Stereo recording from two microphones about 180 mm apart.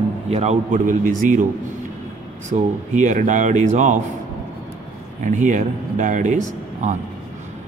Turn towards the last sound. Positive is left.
turn(degrees=-45)  # may be behind; listen again after turning